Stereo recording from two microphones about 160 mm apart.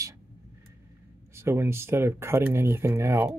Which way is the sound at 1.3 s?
15° right (ahead or behind).